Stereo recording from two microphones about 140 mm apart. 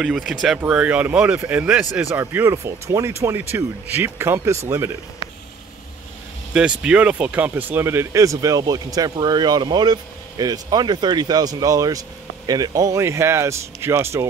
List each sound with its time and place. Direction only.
0.0 s a man's voice: centre (ahead or behind); by 4.9 s 20° right (ahead or behind)
6.5 s speech: 5° right (ahead or behind)